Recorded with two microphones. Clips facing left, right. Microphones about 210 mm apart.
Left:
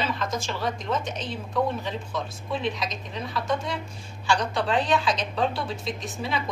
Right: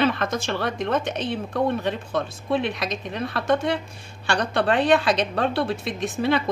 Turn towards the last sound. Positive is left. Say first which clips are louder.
# right 8 dB
turn(degrees=-65)  # may be behind; listen again after turning